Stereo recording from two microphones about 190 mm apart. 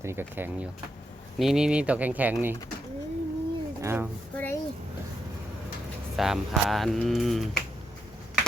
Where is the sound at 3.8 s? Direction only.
10° right (ahead or behind).